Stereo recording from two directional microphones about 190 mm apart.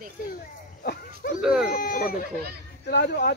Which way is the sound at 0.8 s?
50° left (ahead or behind).